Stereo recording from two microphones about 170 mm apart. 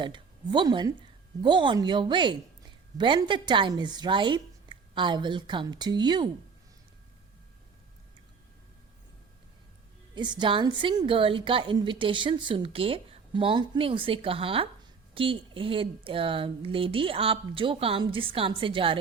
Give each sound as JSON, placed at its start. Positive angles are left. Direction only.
{"t": 0.0, "sound": "a woman's voice", "side_deg": -25}
{"t": 10.2, "sound": "a woman's voice", "side_deg": -25}